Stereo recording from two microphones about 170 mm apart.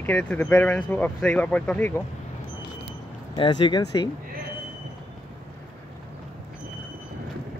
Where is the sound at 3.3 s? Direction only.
25° left (ahead or behind).